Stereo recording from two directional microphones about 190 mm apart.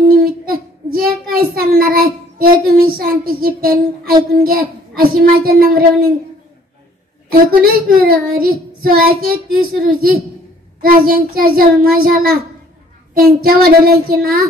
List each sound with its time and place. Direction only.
0.0 s child singing: 50° right (ahead or behind)
4.3 s speech: 50° right (ahead or behind)
7.2 s speech: 50° right (ahead or behind)
13.4 s speech: 50° right (ahead or behind)